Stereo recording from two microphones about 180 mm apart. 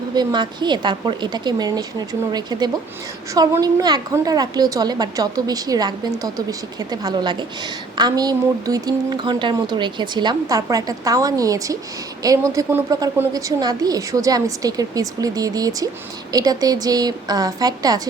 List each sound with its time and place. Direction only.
0.1 s a woman's voice: 25° right (ahead or behind)